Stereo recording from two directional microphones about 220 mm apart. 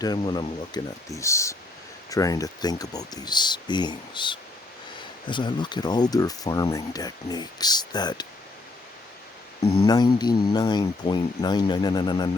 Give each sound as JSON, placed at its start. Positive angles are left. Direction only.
{"t": 0.0, "sound": "speech", "side_deg": 20}
{"t": 9.6, "sound": "speech", "side_deg": 20}